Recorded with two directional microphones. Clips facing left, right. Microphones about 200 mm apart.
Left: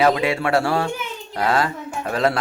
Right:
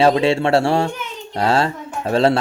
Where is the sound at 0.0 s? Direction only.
30° right (ahead or behind).